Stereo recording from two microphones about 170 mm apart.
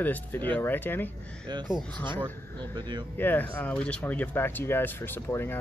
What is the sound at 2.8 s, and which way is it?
Speech, 25° right (ahead or behind).